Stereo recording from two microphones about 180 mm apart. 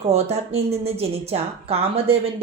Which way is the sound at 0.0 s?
35° right (ahead or behind).